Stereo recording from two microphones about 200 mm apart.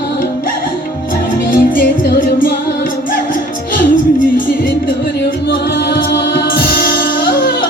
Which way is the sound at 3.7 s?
40° left (ahead or behind).